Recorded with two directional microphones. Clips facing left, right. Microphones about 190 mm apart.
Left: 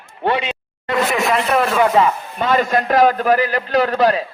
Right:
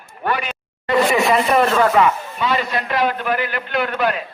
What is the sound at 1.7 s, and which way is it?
Speech, 20° left (ahead or behind).